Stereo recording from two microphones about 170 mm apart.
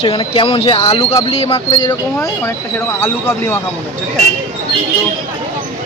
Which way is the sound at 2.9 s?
15° left (ahead or behind).